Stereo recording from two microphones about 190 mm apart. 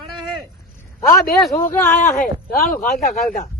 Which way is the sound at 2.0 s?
50° left (ahead or behind).